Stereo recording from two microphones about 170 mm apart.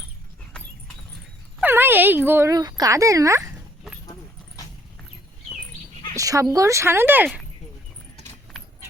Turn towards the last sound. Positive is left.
turn(degrees=-10)  # may be behind; listen again after turning